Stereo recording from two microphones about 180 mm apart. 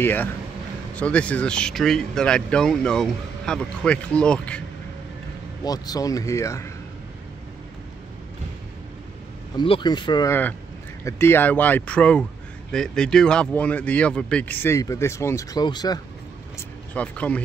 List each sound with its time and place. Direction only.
0.0 s speech: 10° left (ahead or behind)
5.6 s speech: 20° left (ahead or behind)
9.6 s speech: 25° left (ahead or behind)
11.1 s speech: 15° left (ahead or behind)
16.5 s vehicle: 5° left (ahead or behind)